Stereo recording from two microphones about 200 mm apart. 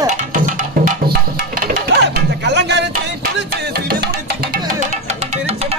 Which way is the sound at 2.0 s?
60° right (ahead or behind).